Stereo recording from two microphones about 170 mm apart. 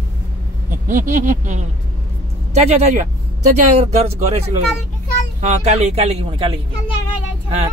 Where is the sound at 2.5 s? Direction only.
40° right (ahead or behind).